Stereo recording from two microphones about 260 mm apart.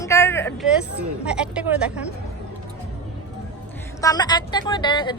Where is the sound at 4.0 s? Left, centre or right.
Centre.